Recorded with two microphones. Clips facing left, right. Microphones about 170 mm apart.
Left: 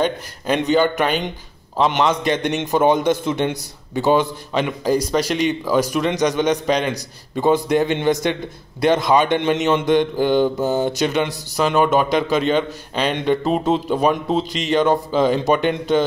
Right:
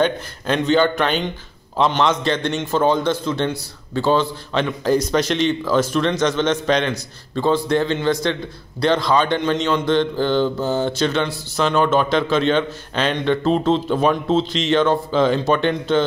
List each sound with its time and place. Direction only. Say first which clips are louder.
0.0 s a man's voice: right 1 dB; 10° left (ahead or behind)